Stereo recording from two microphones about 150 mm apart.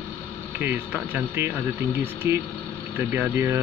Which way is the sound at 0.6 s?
15° right (ahead or behind).